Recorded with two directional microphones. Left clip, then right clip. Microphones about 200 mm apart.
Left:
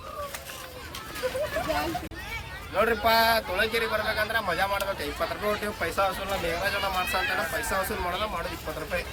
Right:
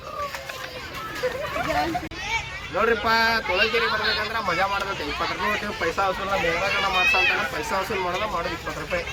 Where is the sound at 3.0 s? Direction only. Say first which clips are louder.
Right 1 dB; 40° left (ahead or behind).